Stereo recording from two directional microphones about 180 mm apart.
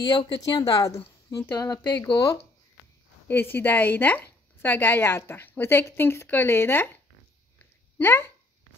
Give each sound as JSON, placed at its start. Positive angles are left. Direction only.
{"t": 0.0, "sound": "a woman's voice", "side_deg": 20}
{"t": 8.0, "sound": "speech", "side_deg": 10}